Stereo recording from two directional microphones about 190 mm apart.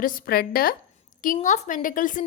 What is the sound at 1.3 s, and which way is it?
Speech, 40° left (ahead or behind).